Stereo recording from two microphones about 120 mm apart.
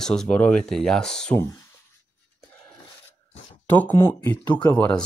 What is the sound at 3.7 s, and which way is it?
Speech, 15° left (ahead or behind).